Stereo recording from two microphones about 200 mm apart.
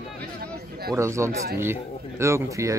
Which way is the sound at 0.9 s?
15° right (ahead or behind).